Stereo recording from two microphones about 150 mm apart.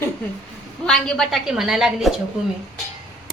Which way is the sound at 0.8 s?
5° left (ahead or behind).